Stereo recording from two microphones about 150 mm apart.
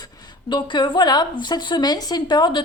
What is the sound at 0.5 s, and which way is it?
A woman's voice, 30° left (ahead or behind).